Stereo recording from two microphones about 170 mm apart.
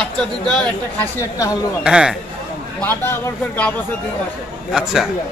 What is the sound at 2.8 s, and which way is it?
Speech, 10° left (ahead or behind).